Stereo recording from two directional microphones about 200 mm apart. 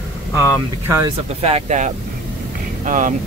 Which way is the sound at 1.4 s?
35° right (ahead or behind).